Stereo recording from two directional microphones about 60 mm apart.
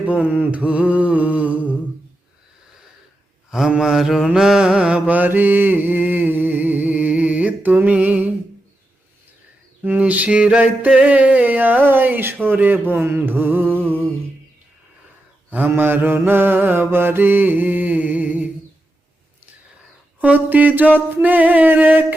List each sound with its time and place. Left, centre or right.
0.0 s mantra: right
3.7 s mantra: centre; by 8.3 s right
9.8 s mantra: right
13.7 s a sound: right
15.4 s mantra: right
20.2 s mantra: right